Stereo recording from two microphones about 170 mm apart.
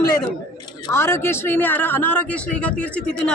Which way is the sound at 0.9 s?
15° left (ahead or behind).